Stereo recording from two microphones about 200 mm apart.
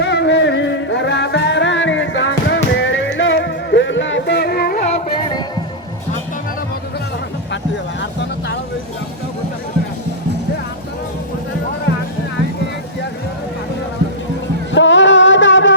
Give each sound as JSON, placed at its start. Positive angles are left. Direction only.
{"t": 0.0, "sound": "music", "side_deg": 60}
{"t": 14.7, "sound": "music", "side_deg": 65}